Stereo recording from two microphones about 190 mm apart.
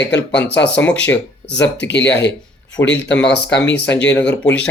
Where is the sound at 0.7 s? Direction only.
10° left (ahead or behind).